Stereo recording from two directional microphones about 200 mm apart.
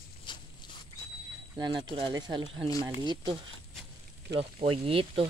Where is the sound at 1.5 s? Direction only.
20° right (ahead or behind).